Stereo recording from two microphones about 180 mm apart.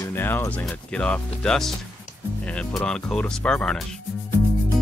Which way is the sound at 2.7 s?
5° left (ahead or behind).